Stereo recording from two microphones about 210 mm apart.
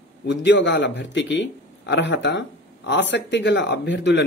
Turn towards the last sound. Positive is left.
turn(degrees=60)  # may be behind; listen again after turning